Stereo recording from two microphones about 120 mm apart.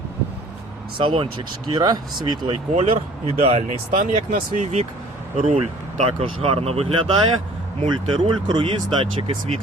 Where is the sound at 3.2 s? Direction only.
60° right (ahead or behind).